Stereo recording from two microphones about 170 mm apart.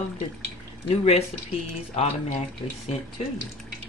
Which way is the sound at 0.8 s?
35° left (ahead or behind).